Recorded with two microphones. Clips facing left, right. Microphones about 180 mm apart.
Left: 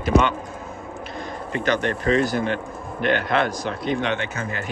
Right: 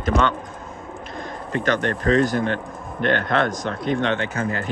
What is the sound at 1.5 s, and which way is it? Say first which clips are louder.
Speech: right 1 dB; 5° left (ahead or behind).